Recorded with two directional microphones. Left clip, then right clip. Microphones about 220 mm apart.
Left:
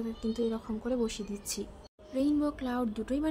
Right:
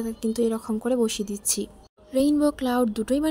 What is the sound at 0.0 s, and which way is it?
A woman's voice, 35° right (ahead or behind).